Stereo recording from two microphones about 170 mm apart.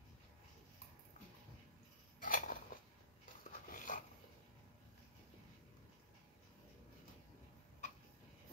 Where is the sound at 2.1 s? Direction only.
55° left (ahead or behind).